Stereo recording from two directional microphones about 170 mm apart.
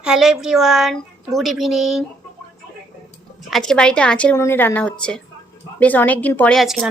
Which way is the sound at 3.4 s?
Centre (ahead or behind).